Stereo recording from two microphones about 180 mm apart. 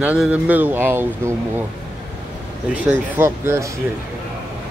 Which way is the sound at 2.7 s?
10° right (ahead or behind).